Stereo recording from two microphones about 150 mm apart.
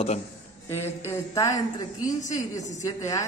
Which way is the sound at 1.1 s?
20° left (ahead or behind).